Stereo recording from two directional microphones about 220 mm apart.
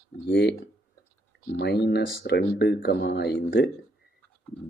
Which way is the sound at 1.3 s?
50° left (ahead or behind).